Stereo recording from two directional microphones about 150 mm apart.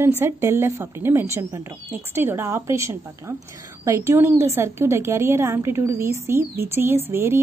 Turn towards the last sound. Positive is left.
turn(degrees=-15)  # may be behind; listen again after turning